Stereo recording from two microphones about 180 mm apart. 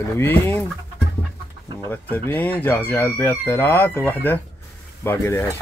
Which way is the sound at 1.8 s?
10° left (ahead or behind).